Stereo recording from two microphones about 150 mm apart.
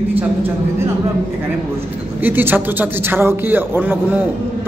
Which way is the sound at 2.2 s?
15° right (ahead or behind).